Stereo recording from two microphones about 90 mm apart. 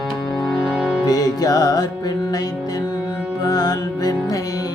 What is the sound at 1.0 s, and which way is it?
Music, 45° left (ahead or behind).